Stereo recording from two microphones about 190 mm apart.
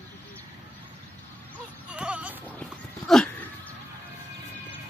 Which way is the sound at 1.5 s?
5° right (ahead or behind).